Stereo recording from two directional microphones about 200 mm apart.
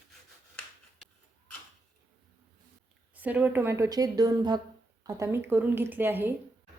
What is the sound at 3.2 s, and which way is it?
A woman's voice, 10° right (ahead or behind).